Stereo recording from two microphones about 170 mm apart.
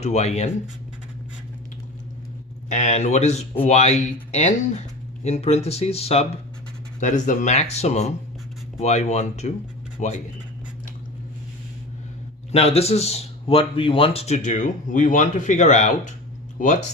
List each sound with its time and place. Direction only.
0.0 s a man's voice: 40° left (ahead or behind)
2.6 s a man's voice: 45° left (ahead or behind)
12.5 s a man's voice: 35° left (ahead or behind)